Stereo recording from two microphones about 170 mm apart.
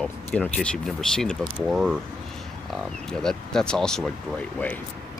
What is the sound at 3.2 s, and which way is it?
Speech, 5° left (ahead or behind).